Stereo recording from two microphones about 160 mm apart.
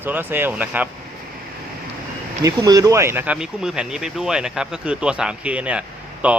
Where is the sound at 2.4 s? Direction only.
20° right (ahead or behind).